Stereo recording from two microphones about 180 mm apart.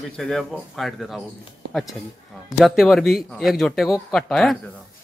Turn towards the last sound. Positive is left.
turn(degrees=0)  # may be behind; listen again after turning